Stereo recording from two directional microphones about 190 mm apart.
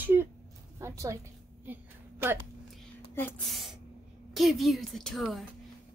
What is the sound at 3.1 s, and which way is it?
A woman's voice, 10° left (ahead or behind).